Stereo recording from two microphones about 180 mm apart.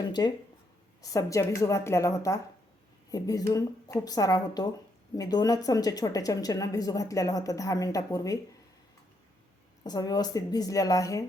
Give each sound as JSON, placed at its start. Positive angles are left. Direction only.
{"t": 0.0, "sound": "a woman's voice", "side_deg": 25}
{"t": 9.8, "sound": "a woman's voice", "side_deg": 20}